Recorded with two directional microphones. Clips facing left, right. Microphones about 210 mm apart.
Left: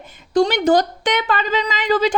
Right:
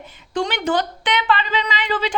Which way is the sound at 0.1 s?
40° left (ahead or behind).